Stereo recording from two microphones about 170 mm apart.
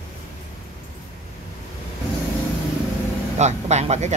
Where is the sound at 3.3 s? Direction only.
40° right (ahead or behind).